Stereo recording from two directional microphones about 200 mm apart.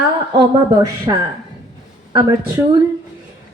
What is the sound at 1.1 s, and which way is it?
Speech, 20° right (ahead or behind).